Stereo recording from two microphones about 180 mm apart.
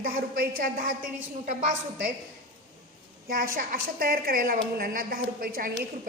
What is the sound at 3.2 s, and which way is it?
A woman's voice, 50° right (ahead or behind).